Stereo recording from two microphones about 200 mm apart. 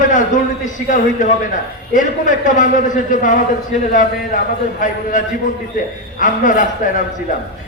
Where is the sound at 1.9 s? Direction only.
40° left (ahead or behind).